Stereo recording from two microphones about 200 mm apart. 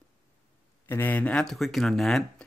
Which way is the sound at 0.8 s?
10° left (ahead or behind).